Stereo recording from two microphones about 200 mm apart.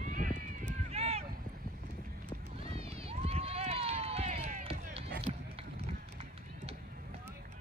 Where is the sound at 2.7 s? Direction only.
30° right (ahead or behind).